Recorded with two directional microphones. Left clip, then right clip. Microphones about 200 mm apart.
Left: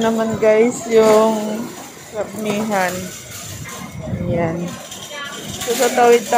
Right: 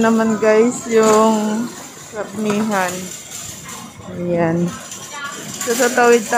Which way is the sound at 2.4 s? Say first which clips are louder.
Right 2 dB; 15° right (ahead or behind).